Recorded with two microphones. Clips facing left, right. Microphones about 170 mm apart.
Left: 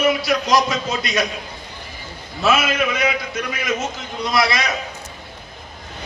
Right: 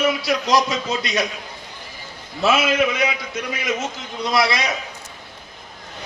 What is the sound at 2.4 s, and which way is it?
Speech, 25° right (ahead or behind).